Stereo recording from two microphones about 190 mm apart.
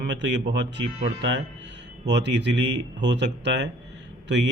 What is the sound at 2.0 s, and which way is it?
Speech, 65° right (ahead or behind).